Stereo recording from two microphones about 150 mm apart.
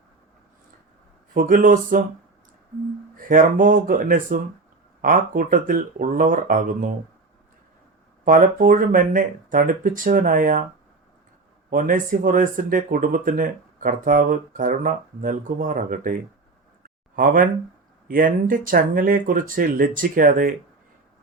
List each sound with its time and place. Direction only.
1.3 s speech: 65° right (ahead or behind)
3.2 s speech: 65° right (ahead or behind)
8.2 s speech: 65° right (ahead or behind)
11.7 s speech: 65° right (ahead or behind)